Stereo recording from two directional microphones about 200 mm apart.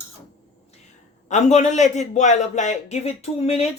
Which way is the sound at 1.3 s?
35° left (ahead or behind).